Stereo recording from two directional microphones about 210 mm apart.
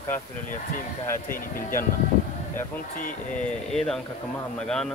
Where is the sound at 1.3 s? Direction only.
40° left (ahead or behind).